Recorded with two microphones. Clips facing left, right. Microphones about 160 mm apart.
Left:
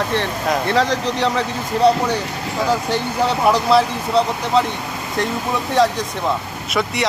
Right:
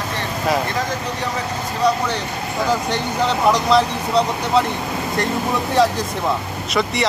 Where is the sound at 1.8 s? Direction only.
30° left (ahead or behind).